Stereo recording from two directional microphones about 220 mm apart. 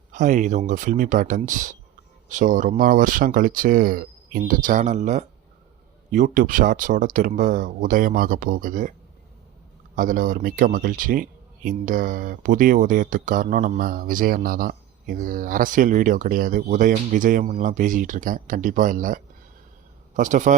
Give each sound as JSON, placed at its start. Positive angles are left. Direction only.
{"t": 0.1, "sound": "speech", "side_deg": -35}
{"t": 9.9, "sound": "speech", "side_deg": -35}